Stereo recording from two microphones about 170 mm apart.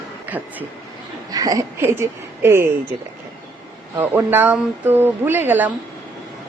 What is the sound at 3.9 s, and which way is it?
Speech, 15° right (ahead or behind).